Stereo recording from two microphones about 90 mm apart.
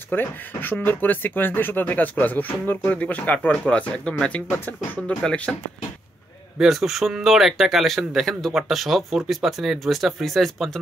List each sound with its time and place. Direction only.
0.1 s speech: 20° left (ahead or behind)
6.6 s speech: 5° right (ahead or behind)